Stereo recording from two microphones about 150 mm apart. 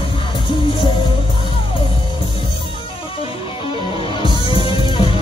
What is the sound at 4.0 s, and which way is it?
Music, 35° left (ahead or behind).